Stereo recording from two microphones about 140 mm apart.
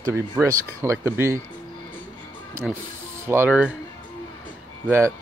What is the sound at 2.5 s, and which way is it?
Music, 20° right (ahead or behind).